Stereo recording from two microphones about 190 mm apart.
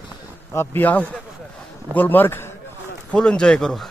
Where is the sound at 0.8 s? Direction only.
10° left (ahead or behind).